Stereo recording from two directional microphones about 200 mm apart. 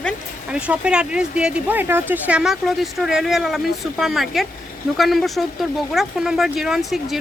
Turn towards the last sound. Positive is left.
turn(degrees=0)  # may be behind; listen again after turning